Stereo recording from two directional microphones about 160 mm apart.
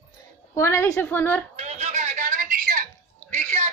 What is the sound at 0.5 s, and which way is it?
Speech, 15° left (ahead or behind).